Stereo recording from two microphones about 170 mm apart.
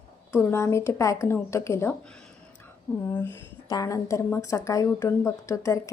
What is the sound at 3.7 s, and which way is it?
A woman's voice, 20° left (ahead or behind).